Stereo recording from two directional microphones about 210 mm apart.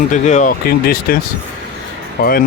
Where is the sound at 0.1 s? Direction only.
35° left (ahead or behind).